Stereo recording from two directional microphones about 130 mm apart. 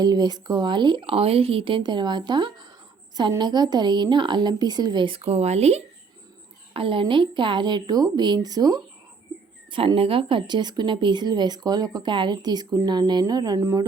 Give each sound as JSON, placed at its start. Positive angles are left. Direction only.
{"t": 0.0, "sound": "a woman's voice", "side_deg": -30}
{"t": 6.7, "sound": "a woman's voice", "side_deg": -40}
{"t": 9.7, "sound": "a woman's voice", "side_deg": -45}